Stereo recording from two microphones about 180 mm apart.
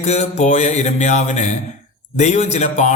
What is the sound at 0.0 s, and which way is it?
Speech, 40° left (ahead or behind).